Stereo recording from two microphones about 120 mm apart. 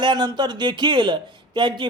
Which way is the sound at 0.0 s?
40° right (ahead or behind).